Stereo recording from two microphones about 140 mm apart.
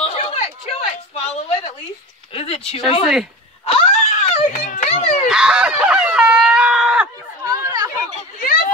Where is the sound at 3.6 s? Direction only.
45° left (ahead or behind).